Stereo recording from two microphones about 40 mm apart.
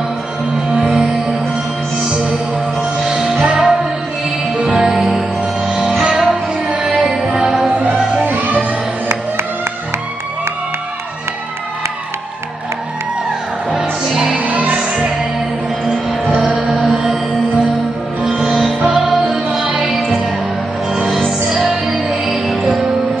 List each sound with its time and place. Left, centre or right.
0.7 s music: centre
2.0 s music: right
4.7 s music: centre
5.7 s music: right
7.0 s music: centre
8.2 s music: right
13.7 s music: centre
14.3 s music: right
14.8 s music: right
15.8 s music: centre
20.9 s music: centre